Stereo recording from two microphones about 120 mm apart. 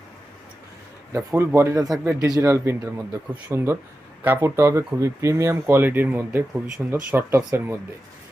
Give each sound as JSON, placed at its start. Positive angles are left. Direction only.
{"t": 1.1, "sound": "speech", "side_deg": -20}
{"t": 6.5, "sound": "speech", "side_deg": -5}
{"t": 7.1, "sound": "speech", "side_deg": -20}